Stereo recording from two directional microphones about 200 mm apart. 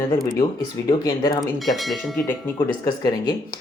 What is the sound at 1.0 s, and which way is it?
Speech, 20° left (ahead or behind).